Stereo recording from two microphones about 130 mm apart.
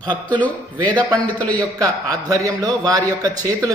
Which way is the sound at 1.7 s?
25° right (ahead or behind).